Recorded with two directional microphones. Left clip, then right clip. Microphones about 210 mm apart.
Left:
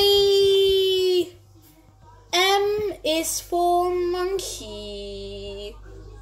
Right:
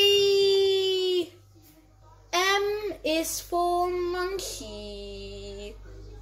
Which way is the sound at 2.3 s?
5° left (ahead or behind).